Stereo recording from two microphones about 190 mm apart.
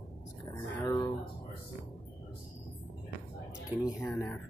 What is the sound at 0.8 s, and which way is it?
Speech, 20° left (ahead or behind).